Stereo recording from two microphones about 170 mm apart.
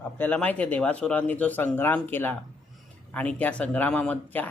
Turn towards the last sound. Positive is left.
turn(degrees=10)  # may be behind; listen again after turning